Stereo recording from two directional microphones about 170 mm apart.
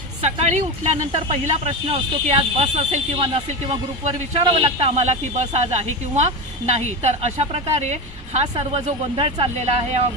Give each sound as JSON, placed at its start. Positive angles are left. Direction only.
{"t": 0.2, "sound": "speech", "side_deg": -40}